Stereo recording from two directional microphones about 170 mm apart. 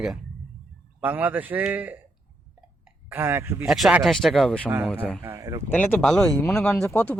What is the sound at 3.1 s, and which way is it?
Speech, 15° right (ahead or behind).